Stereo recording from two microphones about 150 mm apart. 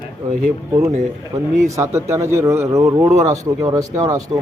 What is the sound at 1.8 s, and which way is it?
Speech, 15° right (ahead or behind).